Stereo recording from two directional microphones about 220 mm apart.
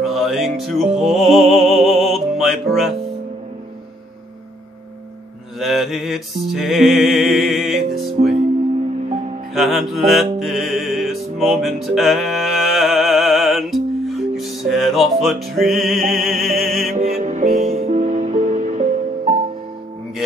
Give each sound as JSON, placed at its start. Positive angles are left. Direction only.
{"t": 0.0, "sound": "music", "side_deg": 0}
{"t": 5.6, "sound": "music", "side_deg": 0}
{"t": 9.5, "sound": "music", "side_deg": 0}
{"t": 16.9, "sound": "music", "side_deg": -30}